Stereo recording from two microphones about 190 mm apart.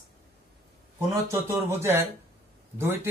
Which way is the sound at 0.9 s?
15° right (ahead or behind).